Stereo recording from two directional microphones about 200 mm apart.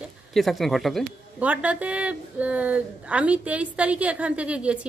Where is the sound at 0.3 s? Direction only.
Centre (ahead or behind).